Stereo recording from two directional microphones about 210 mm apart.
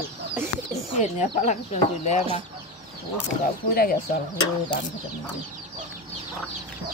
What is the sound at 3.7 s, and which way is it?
Speech, 45° left (ahead or behind).